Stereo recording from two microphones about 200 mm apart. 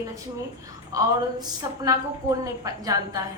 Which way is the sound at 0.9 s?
20° right (ahead or behind).